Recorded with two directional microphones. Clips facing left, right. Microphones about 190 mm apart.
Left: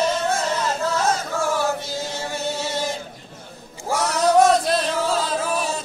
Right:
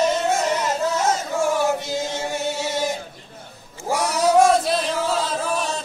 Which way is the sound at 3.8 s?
10° right (ahead or behind).